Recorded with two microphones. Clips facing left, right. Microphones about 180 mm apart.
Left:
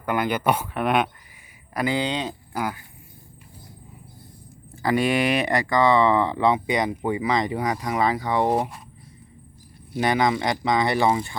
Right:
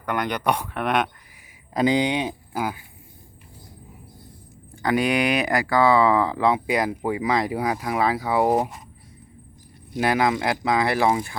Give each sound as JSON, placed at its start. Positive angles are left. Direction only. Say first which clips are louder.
{"t": 0.0, "sound": "speech", "louder": "left 2 dB", "side_deg": 5}
{"t": 1.7, "sound": "speech", "louder": "right 4 dB", "side_deg": -20}
{"t": 4.8, "sound": "speech", "louder": "even", "side_deg": 0}
{"t": 8.5, "sound": "speech", "louder": "right 2 dB", "side_deg": -20}
{"t": 10.0, "sound": "speech", "louder": "even", "side_deg": -5}